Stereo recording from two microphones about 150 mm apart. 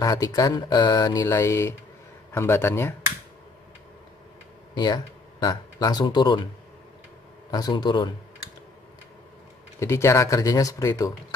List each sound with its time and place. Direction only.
0.0 s speech: 25° left (ahead or behind)
4.7 s speech: 30° left (ahead or behind)
7.5 s speech: 30° left (ahead or behind)
9.8 s speech: 20° left (ahead or behind)